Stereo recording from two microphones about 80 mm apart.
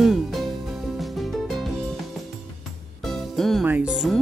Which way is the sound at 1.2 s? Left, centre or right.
Centre.